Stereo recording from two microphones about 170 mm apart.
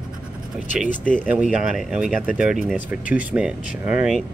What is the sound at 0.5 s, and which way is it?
Speech, centre (ahead or behind).